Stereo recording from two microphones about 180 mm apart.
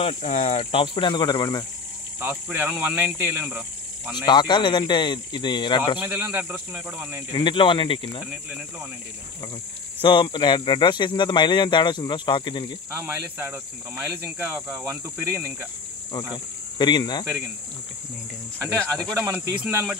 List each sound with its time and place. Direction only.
0.0 s speech: 40° left (ahead or behind); by 1.7 s 25° left (ahead or behind)
2.1 s cricket: 10° right (ahead or behind)
4.3 s speech: 25° left (ahead or behind)
5.9 s cricket: 10° right (ahead or behind)
7.3 s speech: 25° left (ahead or behind)
10.0 s speech: 25° left (ahead or behind)
12.9 s cricket: 10° right (ahead or behind)
16.7 s speech: 25° left (ahead or behind)
19.1 s cricket: 10° right (ahead or behind)